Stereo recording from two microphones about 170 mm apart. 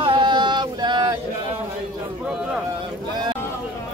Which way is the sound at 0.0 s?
30° right (ahead or behind).